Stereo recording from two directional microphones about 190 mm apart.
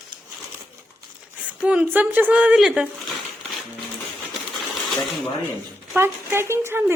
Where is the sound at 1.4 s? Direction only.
5° right (ahead or behind).